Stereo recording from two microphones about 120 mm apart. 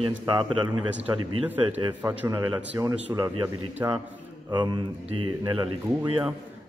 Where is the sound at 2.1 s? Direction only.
30° right (ahead or behind).